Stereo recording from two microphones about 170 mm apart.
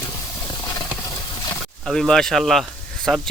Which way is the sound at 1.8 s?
Centre (ahead or behind).